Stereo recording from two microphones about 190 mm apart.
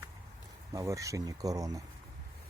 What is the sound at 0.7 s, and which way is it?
Speech, 15° right (ahead or behind).